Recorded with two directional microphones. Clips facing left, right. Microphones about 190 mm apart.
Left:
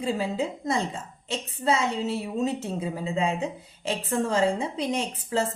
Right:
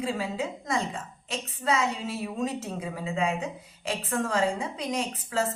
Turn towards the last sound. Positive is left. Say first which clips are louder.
# left 2 dB
turn(degrees=25)  # may be behind; listen again after turning